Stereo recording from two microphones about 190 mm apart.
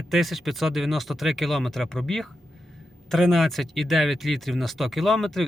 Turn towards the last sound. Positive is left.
turn(degrees=0)  # may be behind; listen again after turning